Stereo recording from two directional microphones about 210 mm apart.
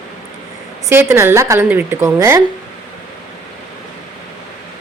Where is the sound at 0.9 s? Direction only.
10° right (ahead or behind).